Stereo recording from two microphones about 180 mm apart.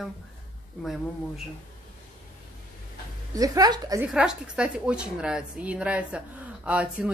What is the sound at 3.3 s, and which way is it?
Speech, 20° right (ahead or behind).